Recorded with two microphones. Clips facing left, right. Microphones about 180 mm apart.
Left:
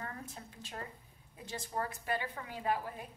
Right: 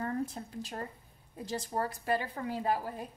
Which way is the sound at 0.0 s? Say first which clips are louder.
Right 11 dB; 35° right (ahead or behind).